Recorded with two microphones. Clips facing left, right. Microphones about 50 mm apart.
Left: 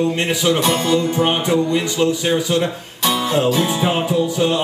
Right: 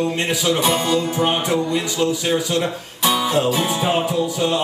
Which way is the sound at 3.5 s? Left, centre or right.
Centre.